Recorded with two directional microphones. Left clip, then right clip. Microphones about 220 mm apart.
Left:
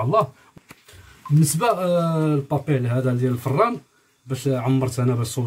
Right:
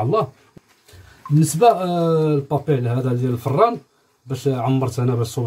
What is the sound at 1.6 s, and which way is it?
Speech, 15° left (ahead or behind).